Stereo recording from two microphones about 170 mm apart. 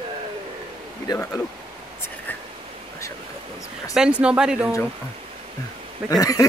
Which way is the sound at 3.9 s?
5° right (ahead or behind).